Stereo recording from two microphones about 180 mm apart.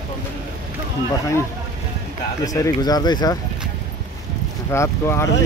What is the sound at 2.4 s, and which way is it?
Speech, 20° left (ahead or behind).